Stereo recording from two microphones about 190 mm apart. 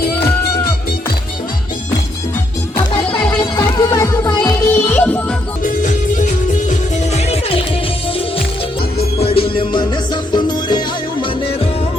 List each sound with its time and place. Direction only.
3.1 s music: 10° left (ahead or behind)
3.5 s music: 20° left (ahead or behind)
5.6 s music: 40° left (ahead or behind)
9.2 s music: 30° left (ahead or behind)